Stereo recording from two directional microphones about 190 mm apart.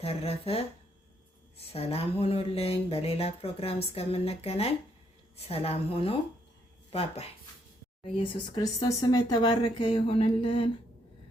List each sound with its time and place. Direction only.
0.0 s speech: 30° left (ahead or behind)